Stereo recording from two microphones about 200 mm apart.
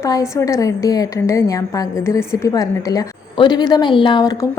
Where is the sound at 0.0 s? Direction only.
15° left (ahead or behind).